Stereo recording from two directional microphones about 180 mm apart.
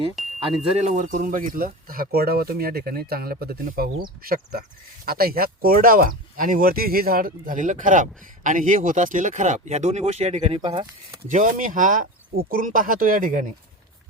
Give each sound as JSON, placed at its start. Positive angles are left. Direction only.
{"t": 0.4, "sound": "speech", "side_deg": -35}
{"t": 11.2, "sound": "speech", "side_deg": -45}